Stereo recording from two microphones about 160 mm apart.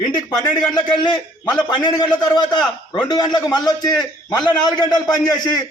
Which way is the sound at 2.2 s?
25° left (ahead or behind).